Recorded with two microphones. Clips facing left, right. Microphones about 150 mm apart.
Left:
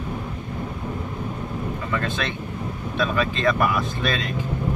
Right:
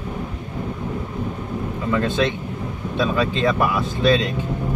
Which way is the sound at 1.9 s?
20° right (ahead or behind).